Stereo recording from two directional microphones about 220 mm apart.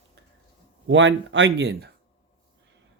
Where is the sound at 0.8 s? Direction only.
55° right (ahead or behind).